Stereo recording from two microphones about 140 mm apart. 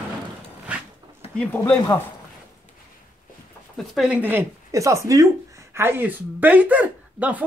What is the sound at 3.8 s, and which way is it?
Speech, 5° right (ahead or behind).